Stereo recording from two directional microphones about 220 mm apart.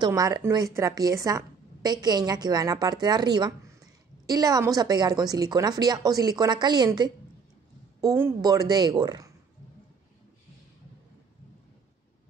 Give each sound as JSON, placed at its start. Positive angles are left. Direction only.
{"t": 0.0, "sound": "a woman's voice", "side_deg": -15}